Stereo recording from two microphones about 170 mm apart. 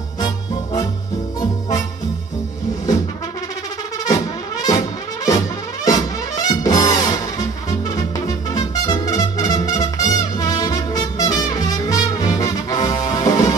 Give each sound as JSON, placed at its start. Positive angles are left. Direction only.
{"t": 4.0, "sound": "music", "side_deg": 20}
{"t": 8.5, "sound": "music", "side_deg": 25}